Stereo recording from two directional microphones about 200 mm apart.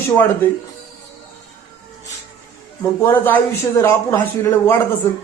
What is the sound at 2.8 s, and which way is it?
Speech, 10° left (ahead or behind).